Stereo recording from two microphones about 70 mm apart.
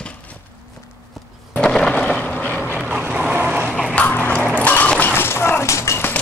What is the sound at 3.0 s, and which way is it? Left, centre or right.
Boat, right.